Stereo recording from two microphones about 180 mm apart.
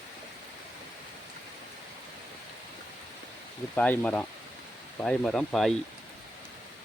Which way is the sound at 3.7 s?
10° left (ahead or behind).